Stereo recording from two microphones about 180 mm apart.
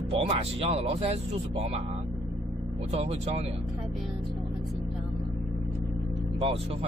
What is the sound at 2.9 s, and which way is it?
Speech, 35° right (ahead or behind).